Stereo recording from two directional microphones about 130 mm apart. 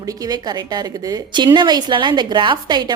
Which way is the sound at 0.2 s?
30° right (ahead or behind).